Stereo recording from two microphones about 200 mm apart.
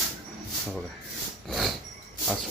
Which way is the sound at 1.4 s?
Centre (ahead or behind).